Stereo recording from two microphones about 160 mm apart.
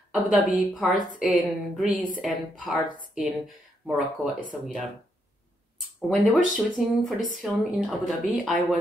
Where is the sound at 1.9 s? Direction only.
55° left (ahead or behind).